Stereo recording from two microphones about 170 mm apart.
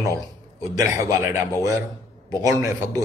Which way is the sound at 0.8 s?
15° right (ahead or behind).